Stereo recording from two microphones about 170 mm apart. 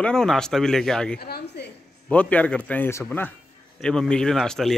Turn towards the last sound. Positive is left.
turn(degrees=0)  # may be behind; listen again after turning